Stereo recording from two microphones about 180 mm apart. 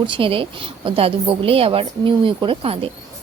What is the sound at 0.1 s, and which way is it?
A woman's voice, 30° right (ahead or behind).